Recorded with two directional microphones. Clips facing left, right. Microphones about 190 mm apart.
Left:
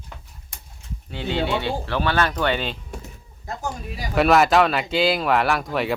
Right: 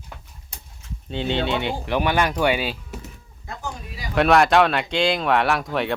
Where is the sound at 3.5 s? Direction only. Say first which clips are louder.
Left 3 dB; 40° left (ahead or behind).